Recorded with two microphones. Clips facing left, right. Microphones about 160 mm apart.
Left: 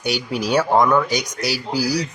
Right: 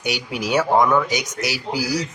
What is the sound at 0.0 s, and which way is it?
Speech, 15° right (ahead or behind).